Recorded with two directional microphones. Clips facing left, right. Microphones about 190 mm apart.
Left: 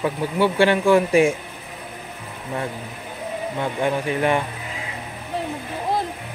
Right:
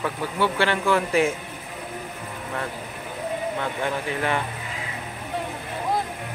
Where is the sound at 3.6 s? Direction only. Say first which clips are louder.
Left 4 dB; 20° left (ahead or behind).